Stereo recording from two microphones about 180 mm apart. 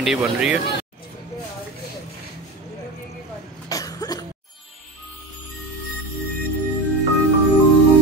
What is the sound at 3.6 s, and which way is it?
Cough, 20° left (ahead or behind).